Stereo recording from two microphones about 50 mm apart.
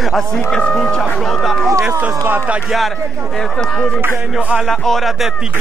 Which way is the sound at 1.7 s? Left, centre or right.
Right.